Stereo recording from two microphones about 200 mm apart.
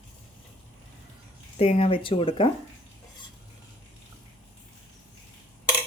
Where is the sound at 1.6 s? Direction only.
30° left (ahead or behind).